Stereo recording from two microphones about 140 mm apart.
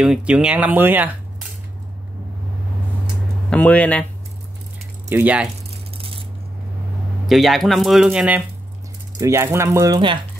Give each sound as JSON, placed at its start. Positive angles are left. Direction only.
{"t": 0.0, "sound": "speech", "side_deg": -5}
{"t": 3.4, "sound": "speech", "side_deg": 10}
{"t": 5.1, "sound": "speech", "side_deg": -10}
{"t": 5.9, "sound": "coin", "side_deg": -40}
{"t": 7.2, "sound": "speech", "side_deg": 0}
{"t": 9.2, "sound": "speech", "side_deg": -20}